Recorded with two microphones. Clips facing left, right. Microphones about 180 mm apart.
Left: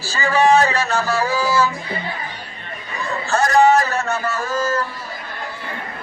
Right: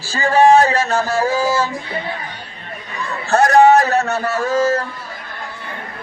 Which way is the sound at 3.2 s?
60° right (ahead or behind).